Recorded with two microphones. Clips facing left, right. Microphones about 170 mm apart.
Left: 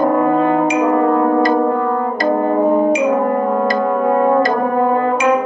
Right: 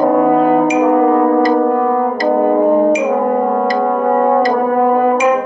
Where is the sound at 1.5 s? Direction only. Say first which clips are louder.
Right 3 dB; 5° right (ahead or behind).